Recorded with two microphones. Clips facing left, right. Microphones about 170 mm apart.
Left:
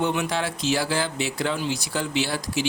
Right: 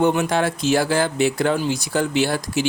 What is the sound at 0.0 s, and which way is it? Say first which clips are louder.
Speech: right 6 dB; 45° right (ahead or behind).